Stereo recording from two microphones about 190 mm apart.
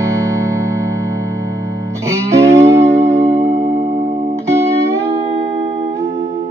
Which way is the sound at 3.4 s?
35° right (ahead or behind).